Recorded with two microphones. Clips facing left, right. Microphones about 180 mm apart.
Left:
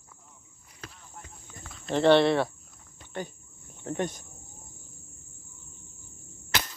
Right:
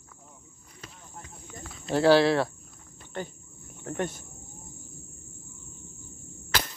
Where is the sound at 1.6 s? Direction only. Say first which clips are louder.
Even; centre (ahead or behind).